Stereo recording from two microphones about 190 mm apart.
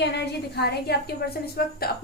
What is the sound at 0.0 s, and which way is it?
A woman's voice, 60° left (ahead or behind).